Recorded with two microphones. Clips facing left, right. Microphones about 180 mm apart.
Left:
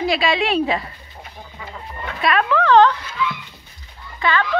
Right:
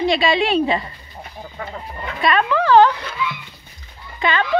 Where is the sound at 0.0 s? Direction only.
Centre (ahead or behind).